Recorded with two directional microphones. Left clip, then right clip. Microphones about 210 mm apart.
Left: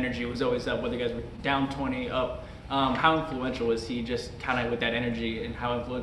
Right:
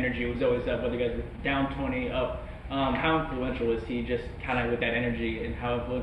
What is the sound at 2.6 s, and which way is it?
A man's voice, 30° left (ahead or behind).